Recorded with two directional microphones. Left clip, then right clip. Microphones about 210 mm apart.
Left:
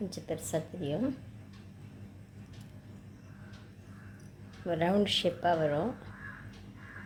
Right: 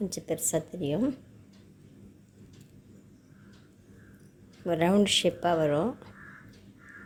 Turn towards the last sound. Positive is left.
turn(degrees=-30)  # may be behind; listen again after turning